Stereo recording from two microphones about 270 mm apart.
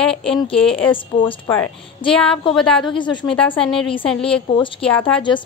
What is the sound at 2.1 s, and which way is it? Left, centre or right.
Speech, centre.